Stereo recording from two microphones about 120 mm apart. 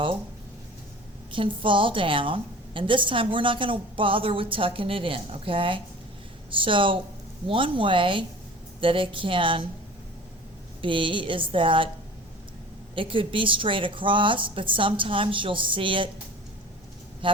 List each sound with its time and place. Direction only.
1.3 s a woman's voice: 45° right (ahead or behind)
10.8 s a woman's voice: 45° right (ahead or behind)
13.0 s a woman's voice: 45° right (ahead or behind)
17.2 s a sound: 45° right (ahead or behind)